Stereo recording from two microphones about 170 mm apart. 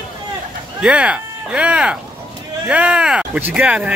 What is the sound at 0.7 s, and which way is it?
Speech, 5° right (ahead or behind).